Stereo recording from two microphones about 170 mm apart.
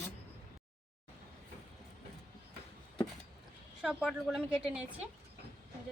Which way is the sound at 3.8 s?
5° right (ahead or behind).